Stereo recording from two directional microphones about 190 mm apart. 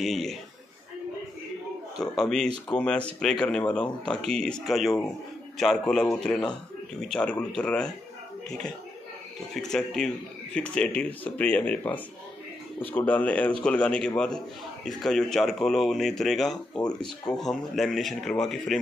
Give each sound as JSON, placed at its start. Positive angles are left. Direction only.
{"t": 0.0, "sound": "speech", "side_deg": 0}
{"t": 2.0, "sound": "speech", "side_deg": 0}
{"t": 9.6, "sound": "speech", "side_deg": 0}
{"t": 16.5, "sound": "speech", "side_deg": 20}
{"t": 17.3, "sound": "speech", "side_deg": 0}